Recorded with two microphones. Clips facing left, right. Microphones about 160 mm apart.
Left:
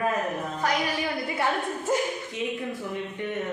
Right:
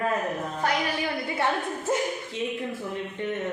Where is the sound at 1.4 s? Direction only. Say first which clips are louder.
Even; 25° right (ahead or behind).